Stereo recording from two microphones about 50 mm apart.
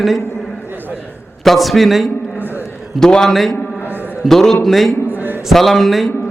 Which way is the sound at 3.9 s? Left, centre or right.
Right.